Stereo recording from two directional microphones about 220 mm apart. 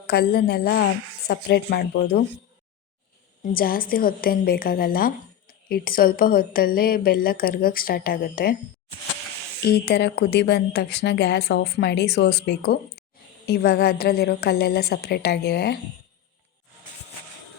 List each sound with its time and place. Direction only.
0.1 s a woman's voice: 45° left (ahead or behind)
3.4 s a woman's voice: 40° left (ahead or behind)
9.6 s a woman's voice: 50° left (ahead or behind)